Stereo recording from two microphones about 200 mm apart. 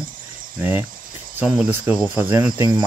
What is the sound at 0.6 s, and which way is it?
Speech, 10° right (ahead or behind).